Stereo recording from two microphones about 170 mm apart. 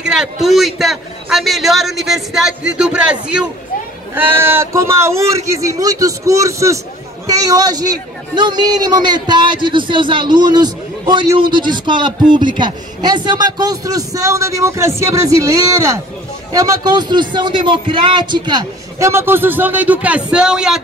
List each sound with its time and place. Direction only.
0.0 s a man's voice: 5° right (ahead or behind)